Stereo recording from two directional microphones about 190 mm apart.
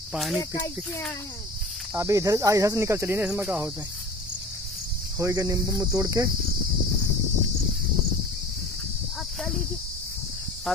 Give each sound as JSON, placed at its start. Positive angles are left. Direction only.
{"t": 0.1, "sound": "speech", "side_deg": 0}
{"t": 0.4, "sound": "speech", "side_deg": 15}
{"t": 2.0, "sound": "speech", "side_deg": -15}
{"t": 5.2, "sound": "speech", "side_deg": -15}